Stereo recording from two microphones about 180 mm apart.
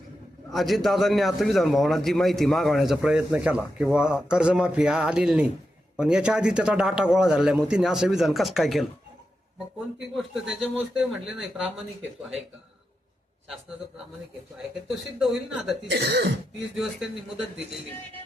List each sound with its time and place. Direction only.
0.5 s a man's voice: centre (ahead or behind)
10.6 s a man's voice: 5° right (ahead or behind)
14.8 s a man's voice: centre (ahead or behind)
15.9 s speech: 60° right (ahead or behind)
16.7 s a man's voice: centre (ahead or behind)